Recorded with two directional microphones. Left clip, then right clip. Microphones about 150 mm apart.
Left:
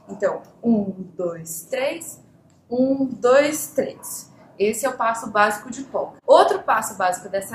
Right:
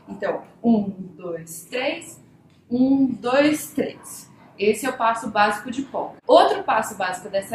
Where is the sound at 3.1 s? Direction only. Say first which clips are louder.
Left 8 dB; 30° left (ahead or behind).